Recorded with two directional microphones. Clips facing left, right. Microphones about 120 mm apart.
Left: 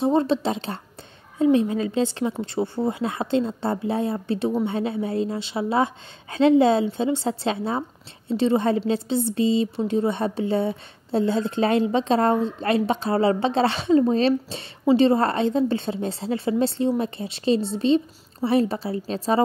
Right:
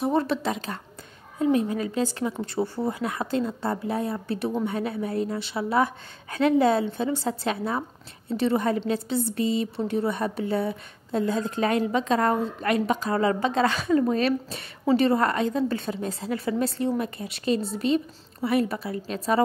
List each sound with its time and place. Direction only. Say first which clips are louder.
0.0 s a woman's voice: left 4 dB; 25° left (ahead or behind)